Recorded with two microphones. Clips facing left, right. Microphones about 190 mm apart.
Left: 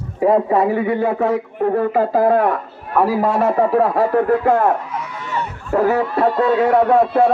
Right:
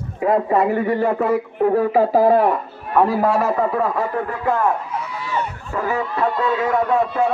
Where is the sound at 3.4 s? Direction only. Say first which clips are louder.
Left 4 dB; 35° left (ahead or behind).